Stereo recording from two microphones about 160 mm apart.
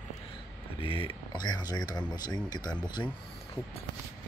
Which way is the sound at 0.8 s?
35° left (ahead or behind).